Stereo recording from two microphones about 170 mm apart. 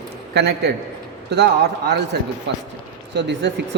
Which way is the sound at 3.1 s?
90° right.